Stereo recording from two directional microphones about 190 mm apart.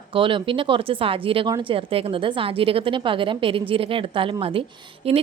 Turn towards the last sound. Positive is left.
turn(degrees=-30)  # may be behind; listen again after turning